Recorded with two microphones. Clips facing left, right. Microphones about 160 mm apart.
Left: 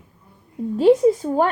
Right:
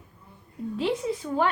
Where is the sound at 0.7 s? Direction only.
45° left (ahead or behind).